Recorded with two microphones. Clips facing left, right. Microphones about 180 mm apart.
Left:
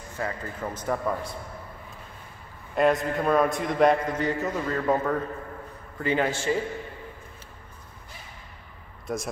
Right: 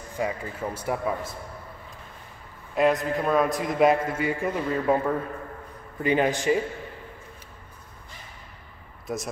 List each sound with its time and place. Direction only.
0.2 s speech: 10° right (ahead or behind)
2.7 s a man's voice: centre (ahead or behind); by 6.6 s 15° right (ahead or behind)
9.0 s speech: centre (ahead or behind)